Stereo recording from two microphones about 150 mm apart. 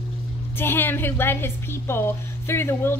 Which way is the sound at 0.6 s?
15° left (ahead or behind).